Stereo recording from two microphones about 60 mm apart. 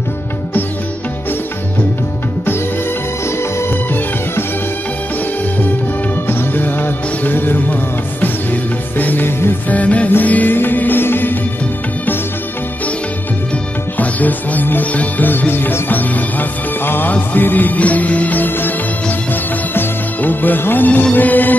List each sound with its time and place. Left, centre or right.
6.2 s music: left
8.9 s music: left
13.9 s music: left